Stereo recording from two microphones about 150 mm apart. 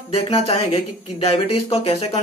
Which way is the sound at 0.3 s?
40° left (ahead or behind).